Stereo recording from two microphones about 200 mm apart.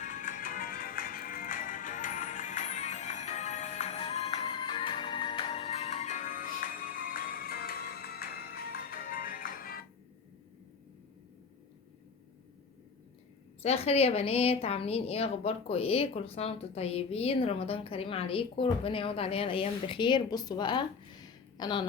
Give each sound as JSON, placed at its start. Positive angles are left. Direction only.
{"t": 0.0, "sound": "music", "side_deg": 40}
{"t": 13.6, "sound": "a woman's voice", "side_deg": 30}